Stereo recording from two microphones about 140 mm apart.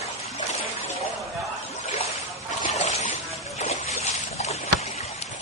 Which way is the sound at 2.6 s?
60° left (ahead or behind).